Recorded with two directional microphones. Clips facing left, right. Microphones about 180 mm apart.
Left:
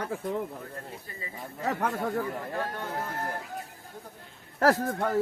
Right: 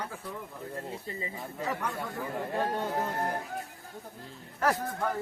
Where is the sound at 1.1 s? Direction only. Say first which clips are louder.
Right 4 dB; 25° right (ahead or behind).